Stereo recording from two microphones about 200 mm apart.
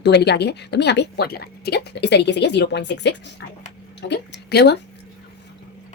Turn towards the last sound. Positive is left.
turn(degrees=55)  # may be behind; listen again after turning